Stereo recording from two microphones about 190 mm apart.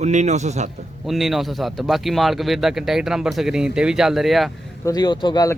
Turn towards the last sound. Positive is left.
turn(degrees=20)  # may be behind; listen again after turning